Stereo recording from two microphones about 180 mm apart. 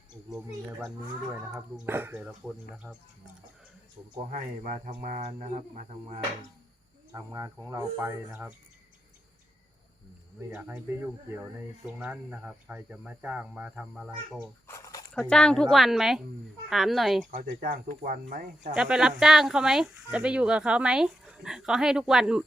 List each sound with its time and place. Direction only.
0.1 s speech: 20° right (ahead or behind)
1.5 s speech: 5° right (ahead or behind)
4.3 s speech: 50° right (ahead or behind)
7.1 s speech: 20° right (ahead or behind)
10.5 s speech: 10° right (ahead or behind)
14.7 s a sound: 20° left (ahead or behind)
15.1 s speech: 5° left (ahead or behind)
17.3 s speech: 50° right (ahead or behind)
18.7 s speech: 5° right (ahead or behind)